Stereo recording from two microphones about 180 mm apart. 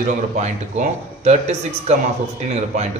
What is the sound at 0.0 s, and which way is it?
A man's voice, 40° right (ahead or behind).